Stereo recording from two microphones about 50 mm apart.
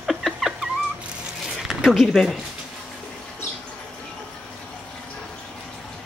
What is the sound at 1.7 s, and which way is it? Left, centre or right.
Speech, centre.